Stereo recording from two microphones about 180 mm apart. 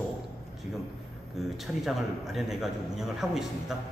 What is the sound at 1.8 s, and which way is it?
A man's voice, centre (ahead or behind).